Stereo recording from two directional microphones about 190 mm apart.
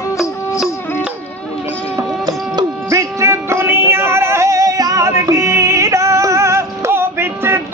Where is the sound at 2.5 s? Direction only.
15° right (ahead or behind).